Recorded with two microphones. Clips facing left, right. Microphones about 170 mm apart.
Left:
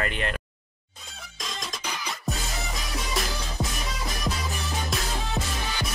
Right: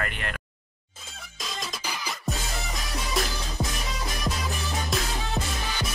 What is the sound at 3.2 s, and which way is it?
Music, centre (ahead or behind).